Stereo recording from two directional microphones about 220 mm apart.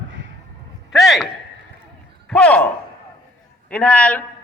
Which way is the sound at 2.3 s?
5° left (ahead or behind).